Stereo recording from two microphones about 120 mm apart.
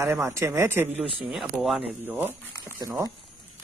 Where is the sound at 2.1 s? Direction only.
20° right (ahead or behind).